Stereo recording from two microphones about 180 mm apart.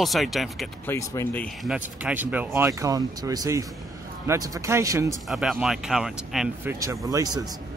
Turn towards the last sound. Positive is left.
turn(degrees=-20)  # may be behind; listen again after turning